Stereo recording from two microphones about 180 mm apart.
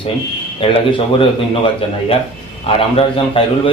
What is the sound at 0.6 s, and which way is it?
A man's voice, 30° left (ahead or behind).